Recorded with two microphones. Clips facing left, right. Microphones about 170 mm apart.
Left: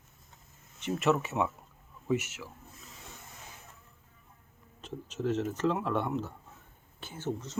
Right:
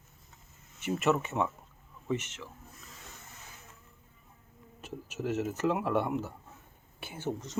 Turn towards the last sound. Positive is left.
turn(degrees=-15)  # may be behind; listen again after turning